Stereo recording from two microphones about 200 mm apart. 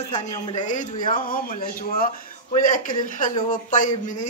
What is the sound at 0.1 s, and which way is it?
A man's voice, 35° left (ahead or behind).